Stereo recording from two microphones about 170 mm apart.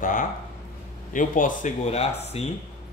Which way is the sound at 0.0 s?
55° left (ahead or behind).